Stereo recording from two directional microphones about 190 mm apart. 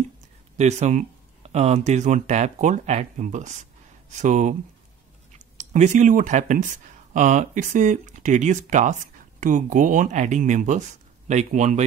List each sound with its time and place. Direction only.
0.6 s speech: 35° right (ahead or behind)
5.6 s speech: 40° right (ahead or behind)